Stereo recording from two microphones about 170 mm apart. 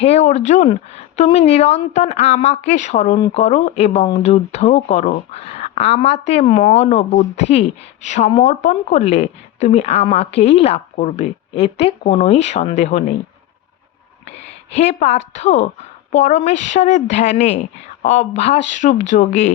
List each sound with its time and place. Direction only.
0.0 s a woman's voice: 40° left (ahead or behind)
14.9 s a woman's voice: 40° left (ahead or behind)